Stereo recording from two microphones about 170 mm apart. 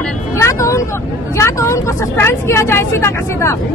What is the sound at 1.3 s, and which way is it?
Speech, 15° left (ahead or behind).